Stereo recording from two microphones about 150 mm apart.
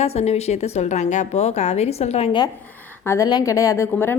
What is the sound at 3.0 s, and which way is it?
A woman's voice, 20° left (ahead or behind).